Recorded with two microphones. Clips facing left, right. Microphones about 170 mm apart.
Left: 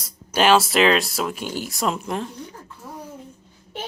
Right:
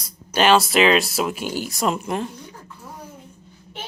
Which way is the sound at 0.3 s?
5° left (ahead or behind).